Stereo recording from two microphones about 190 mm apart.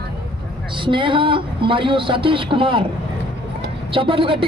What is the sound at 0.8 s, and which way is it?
Speech, 25° right (ahead or behind).